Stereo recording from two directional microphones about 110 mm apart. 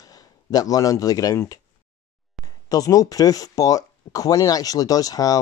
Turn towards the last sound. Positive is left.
turn(degrees=35)  # may be behind; listen again after turning